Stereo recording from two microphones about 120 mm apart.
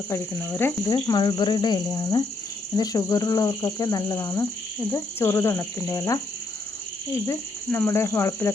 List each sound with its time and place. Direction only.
0.1 s speech: 20° left (ahead or behind)
0.9 s speech: 35° left (ahead or behind)
7.3 s speech: 20° left (ahead or behind)